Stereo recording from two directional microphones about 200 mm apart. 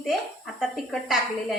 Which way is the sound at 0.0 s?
Centre (ahead or behind).